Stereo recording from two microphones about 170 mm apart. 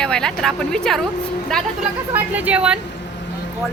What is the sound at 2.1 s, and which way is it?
Speech, 10° right (ahead or behind).